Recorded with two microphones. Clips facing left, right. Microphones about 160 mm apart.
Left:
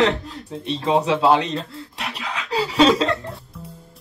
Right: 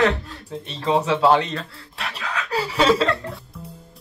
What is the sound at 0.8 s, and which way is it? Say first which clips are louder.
Speech: even; 20° left (ahead or behind).